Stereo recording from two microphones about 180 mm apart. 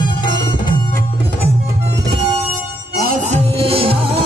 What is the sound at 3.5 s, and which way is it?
Music, 30° right (ahead or behind).